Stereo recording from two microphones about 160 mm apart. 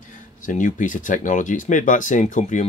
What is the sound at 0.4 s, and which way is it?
Speech, 50° left (ahead or behind).